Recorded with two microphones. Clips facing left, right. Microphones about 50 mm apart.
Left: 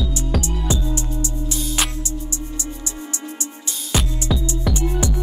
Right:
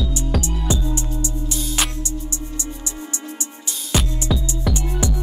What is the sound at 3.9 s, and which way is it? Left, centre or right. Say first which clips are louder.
Music: even; centre.